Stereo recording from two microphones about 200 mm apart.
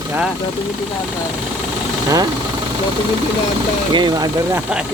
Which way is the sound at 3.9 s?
20° right (ahead or behind).